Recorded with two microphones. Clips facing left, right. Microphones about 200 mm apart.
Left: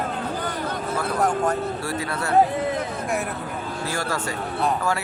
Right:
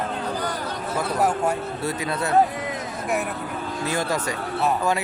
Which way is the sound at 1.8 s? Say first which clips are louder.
Right 1 dB; 20° right (ahead or behind).